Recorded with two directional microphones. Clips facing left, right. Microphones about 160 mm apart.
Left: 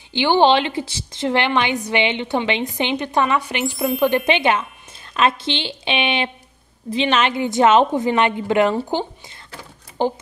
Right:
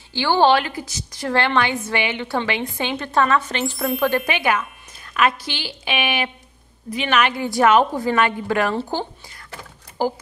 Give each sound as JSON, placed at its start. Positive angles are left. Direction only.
{"t": 0.1, "sound": "a woman's voice", "side_deg": 20}
{"t": 3.7, "sound": "speech", "side_deg": 0}
{"t": 4.3, "sound": "a woman's voice", "side_deg": 25}